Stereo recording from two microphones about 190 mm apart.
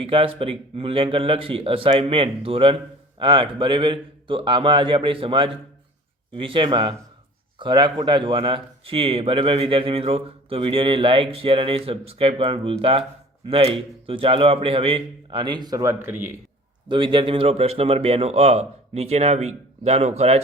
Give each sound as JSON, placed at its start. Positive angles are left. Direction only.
{"t": 0.0, "sound": "a man's voice", "side_deg": -30}
{"t": 16.9, "sound": "a man's voice", "side_deg": -25}